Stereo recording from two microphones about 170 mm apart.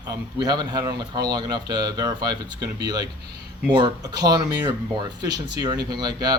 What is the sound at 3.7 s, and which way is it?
Speech, 25° right (ahead or behind).